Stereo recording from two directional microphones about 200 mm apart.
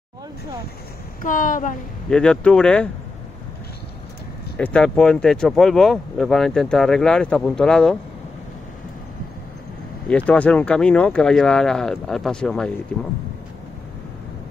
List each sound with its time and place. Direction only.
1.2 s a woman's voice: 40° left (ahead or behind)
2.0 s speech: 5° left (ahead or behind)
4.6 s speech: 5° left (ahead or behind)
10.0 s speech: 5° left (ahead or behind)